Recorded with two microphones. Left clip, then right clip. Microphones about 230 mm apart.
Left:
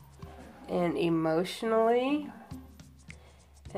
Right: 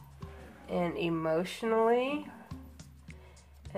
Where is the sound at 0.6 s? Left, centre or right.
Left.